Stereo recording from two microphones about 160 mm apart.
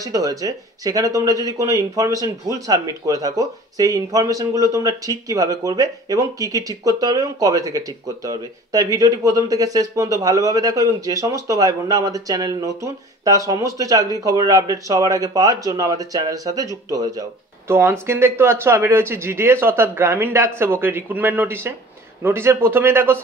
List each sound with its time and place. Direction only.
0.0 s speech: 20° right (ahead or behind)